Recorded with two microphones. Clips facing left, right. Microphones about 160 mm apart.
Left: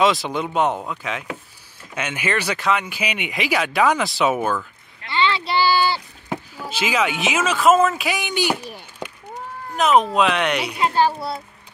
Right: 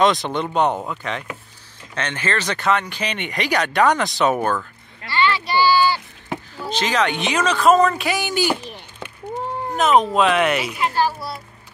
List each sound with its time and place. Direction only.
0.0 s speech: 5° left (ahead or behind)
5.1 s a sound: 25° left (ahead or behind)
6.2 s speech: 10° left (ahead or behind)
10.8 s a child's voice: 25° left (ahead or behind)